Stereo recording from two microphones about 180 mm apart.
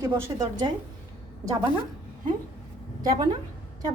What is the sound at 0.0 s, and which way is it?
Speech, 15° right (ahead or behind).